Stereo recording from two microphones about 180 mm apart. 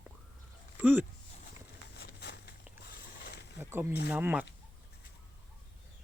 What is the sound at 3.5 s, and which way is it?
Speech, 15° right (ahead or behind).